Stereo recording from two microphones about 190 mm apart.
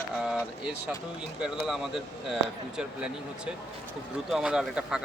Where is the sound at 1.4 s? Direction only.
5° right (ahead or behind).